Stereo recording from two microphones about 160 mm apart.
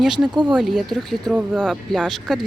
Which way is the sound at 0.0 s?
Centre (ahead or behind).